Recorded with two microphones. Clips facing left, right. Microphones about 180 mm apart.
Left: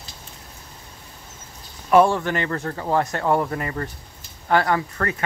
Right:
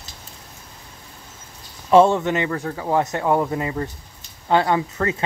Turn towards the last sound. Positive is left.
turn(degrees=-20)  # may be behind; listen again after turning